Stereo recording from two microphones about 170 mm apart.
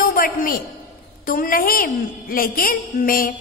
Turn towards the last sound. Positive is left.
turn(degrees=55)  # may be behind; listen again after turning